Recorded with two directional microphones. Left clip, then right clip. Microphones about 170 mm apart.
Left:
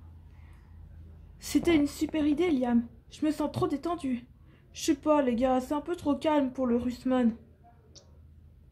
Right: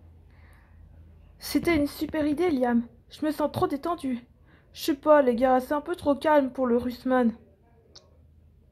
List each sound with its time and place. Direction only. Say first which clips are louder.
1.4 s a woman's voice: right 1 dB; 20° right (ahead or behind)